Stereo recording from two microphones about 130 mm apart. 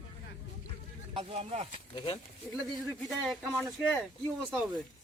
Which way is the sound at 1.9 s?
45° left (ahead or behind).